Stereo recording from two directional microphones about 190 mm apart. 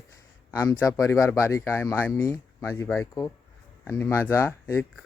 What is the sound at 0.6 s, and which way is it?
Speech, 15° left (ahead or behind).